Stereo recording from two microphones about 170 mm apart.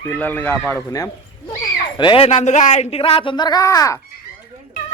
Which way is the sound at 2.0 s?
30° left (ahead or behind).